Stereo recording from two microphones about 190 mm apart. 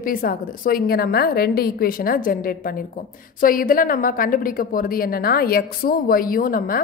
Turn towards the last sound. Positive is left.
turn(degrees=50)  # may be behind; listen again after turning